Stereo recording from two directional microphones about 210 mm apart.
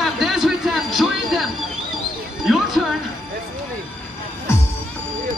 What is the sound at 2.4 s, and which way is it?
Music, centre (ahead or behind).